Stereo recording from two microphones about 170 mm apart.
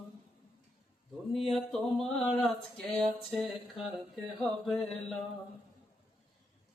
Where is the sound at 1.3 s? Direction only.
Centre (ahead or behind).